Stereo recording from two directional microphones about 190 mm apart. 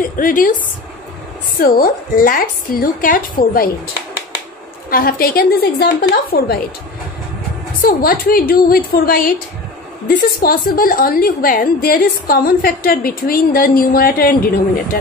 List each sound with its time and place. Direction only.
0.0 s a woman's voice: 45° left (ahead or behind)
1.6 s a woman's voice: 50° left (ahead or behind)
4.8 s a woman's voice: 50° left (ahead or behind)
7.8 s a woman's voice: 50° left (ahead or behind)